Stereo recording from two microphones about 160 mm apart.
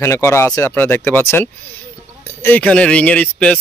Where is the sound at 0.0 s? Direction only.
15° left (ahead or behind).